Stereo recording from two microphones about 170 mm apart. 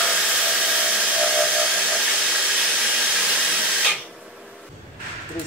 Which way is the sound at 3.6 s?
Centre (ahead or behind).